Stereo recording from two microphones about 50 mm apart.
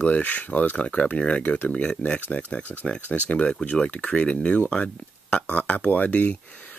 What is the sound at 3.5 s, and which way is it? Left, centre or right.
Speech, centre.